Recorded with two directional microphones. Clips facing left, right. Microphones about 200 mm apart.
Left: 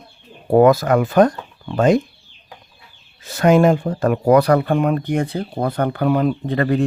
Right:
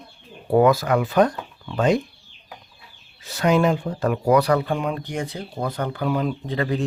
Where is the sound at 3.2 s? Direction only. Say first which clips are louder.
Left 5 dB; 50° left (ahead or behind).